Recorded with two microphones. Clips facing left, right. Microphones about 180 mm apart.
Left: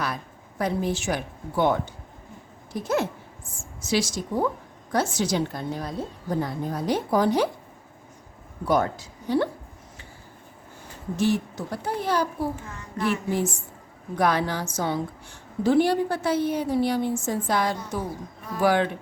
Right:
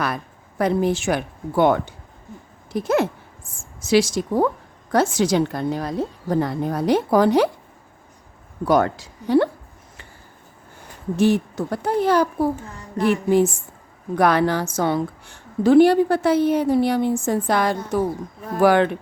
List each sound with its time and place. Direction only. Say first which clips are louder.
0.6 s a woman's voice: right 6 dB; 60° right (ahead or behind)
8.6 s a woman's voice: right 5 dB; 80° right
11.2 s a woman's voice: right 6 dB; 60° right (ahead or behind)